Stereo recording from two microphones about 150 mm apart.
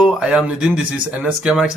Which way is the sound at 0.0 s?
5° right (ahead or behind).